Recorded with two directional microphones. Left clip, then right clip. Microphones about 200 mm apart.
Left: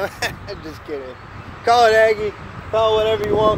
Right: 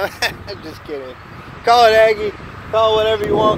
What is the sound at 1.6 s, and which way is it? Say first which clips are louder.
Speech: right 3 dB; 25° right (ahead or behind).